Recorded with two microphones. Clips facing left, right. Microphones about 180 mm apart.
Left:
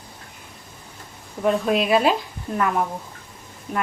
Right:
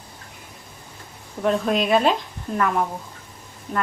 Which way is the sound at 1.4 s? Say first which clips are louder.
Left 1 dB; 5° left (ahead or behind).